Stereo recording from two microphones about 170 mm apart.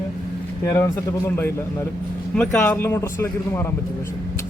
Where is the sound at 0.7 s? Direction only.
15° left (ahead or behind).